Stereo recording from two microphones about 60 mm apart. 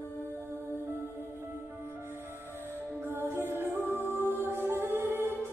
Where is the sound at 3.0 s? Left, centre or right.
Right.